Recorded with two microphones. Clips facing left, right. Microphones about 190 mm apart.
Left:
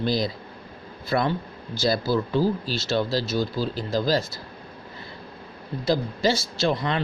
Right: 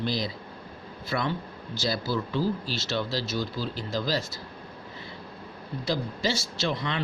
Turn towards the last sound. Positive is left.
turn(degrees=40)  # may be behind; listen again after turning